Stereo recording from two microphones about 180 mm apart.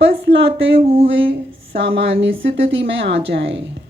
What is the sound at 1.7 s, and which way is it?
A woman's voice, 85° right.